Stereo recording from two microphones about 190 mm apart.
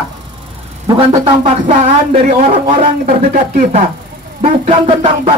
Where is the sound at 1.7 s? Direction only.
40° right (ahead or behind).